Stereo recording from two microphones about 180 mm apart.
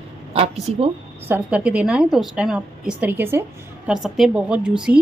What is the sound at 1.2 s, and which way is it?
A woman's voice, 10° right (ahead or behind).